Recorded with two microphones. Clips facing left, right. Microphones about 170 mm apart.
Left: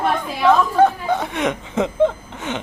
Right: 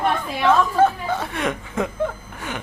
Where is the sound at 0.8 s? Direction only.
15° left (ahead or behind).